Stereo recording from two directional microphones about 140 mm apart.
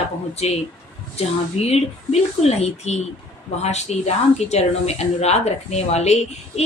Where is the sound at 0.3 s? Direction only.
50° left (ahead or behind).